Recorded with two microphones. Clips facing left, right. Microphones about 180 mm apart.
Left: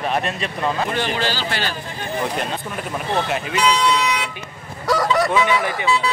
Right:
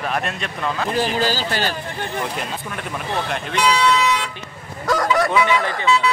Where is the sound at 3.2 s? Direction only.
5° left (ahead or behind).